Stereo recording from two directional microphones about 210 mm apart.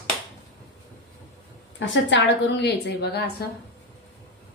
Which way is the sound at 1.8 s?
55° left (ahead or behind).